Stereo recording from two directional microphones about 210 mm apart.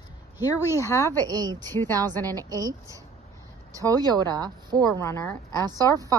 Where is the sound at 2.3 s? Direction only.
15° right (ahead or behind).